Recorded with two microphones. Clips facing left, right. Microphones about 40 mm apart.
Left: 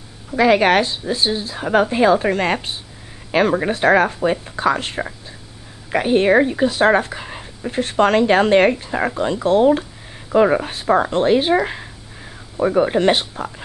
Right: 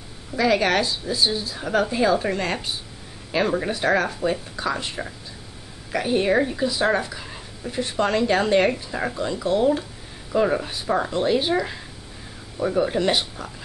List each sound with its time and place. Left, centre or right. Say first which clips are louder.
0.4 s a woman's voice: left 6 dB; left
7.8 s a woman's voice: left 7 dB; left